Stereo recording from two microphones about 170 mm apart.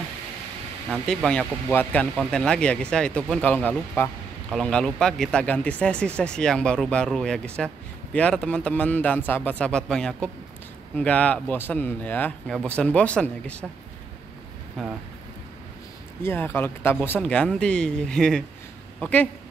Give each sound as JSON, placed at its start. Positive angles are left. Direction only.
{"t": 1.0, "sound": "speech", "side_deg": 5}
{"t": 14.8, "sound": "speech", "side_deg": 0}
{"t": 16.2, "sound": "speech", "side_deg": 15}